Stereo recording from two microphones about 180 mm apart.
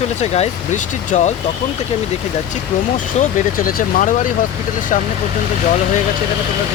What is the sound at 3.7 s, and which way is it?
Speech, 50° left (ahead or behind).